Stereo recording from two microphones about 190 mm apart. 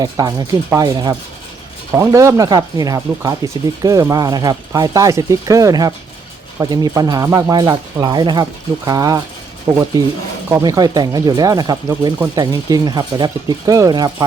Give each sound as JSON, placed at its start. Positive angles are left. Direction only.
{"t": 0.0, "sound": "speech", "side_deg": -20}